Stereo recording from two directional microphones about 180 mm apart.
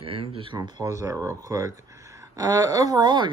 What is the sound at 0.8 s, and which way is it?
Music, 15° right (ahead or behind).